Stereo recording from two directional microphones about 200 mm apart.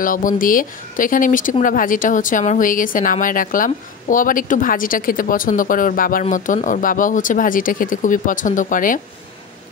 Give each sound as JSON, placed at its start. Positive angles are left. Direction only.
{"t": 0.0, "sound": "speech", "side_deg": 40}